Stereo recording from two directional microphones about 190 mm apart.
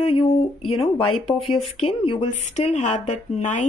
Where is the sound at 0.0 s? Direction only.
30° left (ahead or behind).